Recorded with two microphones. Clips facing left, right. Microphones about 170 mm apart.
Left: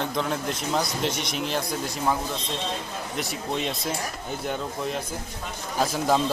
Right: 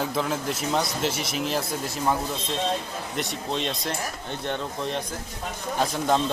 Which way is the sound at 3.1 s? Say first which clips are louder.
Even; 5° left (ahead or behind).